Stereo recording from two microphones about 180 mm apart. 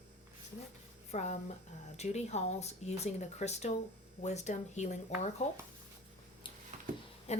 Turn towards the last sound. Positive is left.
turn(degrees=35)  # may be behind; listen again after turning